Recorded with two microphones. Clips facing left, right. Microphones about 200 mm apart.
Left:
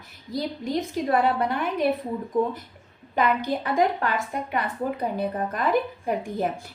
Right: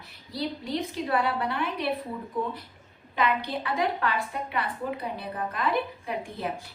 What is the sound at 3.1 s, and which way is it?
A woman's voice, 45° left (ahead or behind).